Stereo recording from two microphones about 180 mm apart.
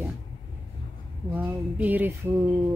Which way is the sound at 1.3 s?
10° right (ahead or behind).